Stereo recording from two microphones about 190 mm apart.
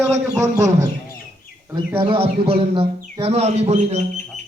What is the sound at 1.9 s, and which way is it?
A man's voice, 25° right (ahead or behind).